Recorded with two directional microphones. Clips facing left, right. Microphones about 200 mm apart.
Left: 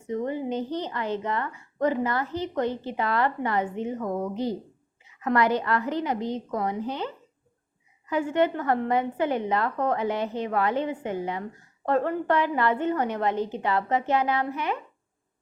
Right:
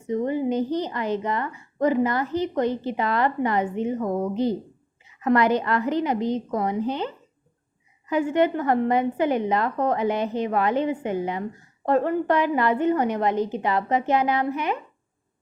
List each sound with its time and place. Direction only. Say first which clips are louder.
0.1 s a woman's voice: right 4 dB; 10° right (ahead or behind)
8.1 s a woman's voice: right 3 dB; 15° right (ahead or behind)